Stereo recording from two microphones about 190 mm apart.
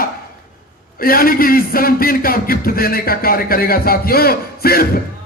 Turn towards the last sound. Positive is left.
turn(degrees=50)  # may be behind; listen again after turning